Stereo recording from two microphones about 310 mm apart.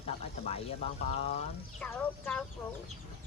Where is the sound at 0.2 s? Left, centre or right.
Centre.